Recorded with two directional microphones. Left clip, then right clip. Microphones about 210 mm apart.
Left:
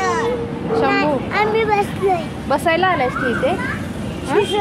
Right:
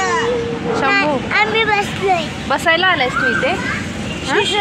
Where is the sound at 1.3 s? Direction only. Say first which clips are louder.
Right 3 dB; 15° left (ahead or behind).